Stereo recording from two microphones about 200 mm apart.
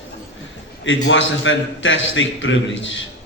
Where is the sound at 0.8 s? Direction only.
70° left (ahead or behind).